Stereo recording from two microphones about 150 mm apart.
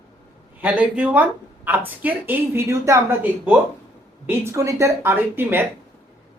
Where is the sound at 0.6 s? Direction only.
10° right (ahead or behind).